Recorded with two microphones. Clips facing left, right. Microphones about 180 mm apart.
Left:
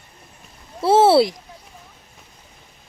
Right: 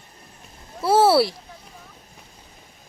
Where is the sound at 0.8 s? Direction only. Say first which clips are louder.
Left 3 dB; 25° left (ahead or behind).